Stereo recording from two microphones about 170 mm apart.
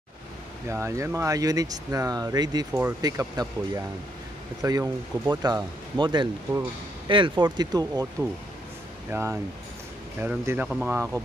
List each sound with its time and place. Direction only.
0.7 s speech: 15° right (ahead or behind)
9.1 s speech: 15° right (ahead or behind)